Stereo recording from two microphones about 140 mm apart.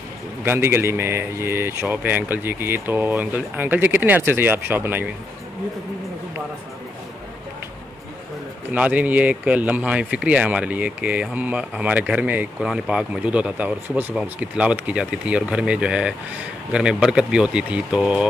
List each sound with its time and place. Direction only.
0.4 s speech: 15° right (ahead or behind)
8.7 s speech: 10° right (ahead or behind)